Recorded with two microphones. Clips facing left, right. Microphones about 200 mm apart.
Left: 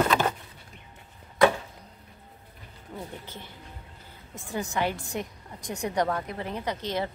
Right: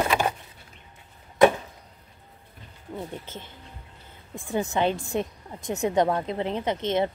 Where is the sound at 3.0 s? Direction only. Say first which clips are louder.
Right 3 dB; 20° right (ahead or behind).